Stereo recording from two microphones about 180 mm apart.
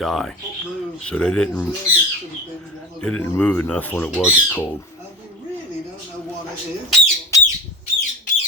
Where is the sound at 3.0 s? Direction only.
10° left (ahead or behind).